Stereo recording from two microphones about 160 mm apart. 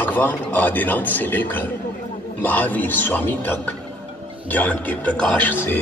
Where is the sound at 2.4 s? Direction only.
10° left (ahead or behind).